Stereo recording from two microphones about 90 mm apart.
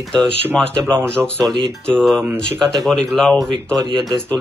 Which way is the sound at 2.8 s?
Centre (ahead or behind).